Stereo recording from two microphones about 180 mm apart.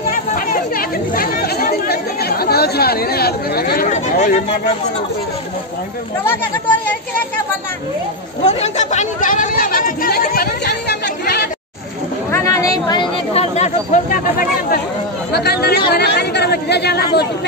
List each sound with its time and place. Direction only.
0.1 s chatter: 55° left (ahead or behind)
8.5 s speech: 35° left (ahead or behind); by 11.4 s 65° left (ahead or behind)
12.3 s speech: 15° left (ahead or behind); by 14.8 s 50° left (ahead or behind)
15.3 s speech: 60° left (ahead or behind)